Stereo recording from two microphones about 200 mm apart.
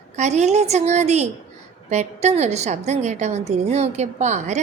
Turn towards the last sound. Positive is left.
turn(degrees=-35)  # may be behind; listen again after turning